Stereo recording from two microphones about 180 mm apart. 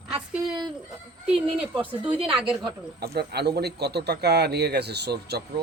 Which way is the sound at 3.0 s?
65° right (ahead or behind).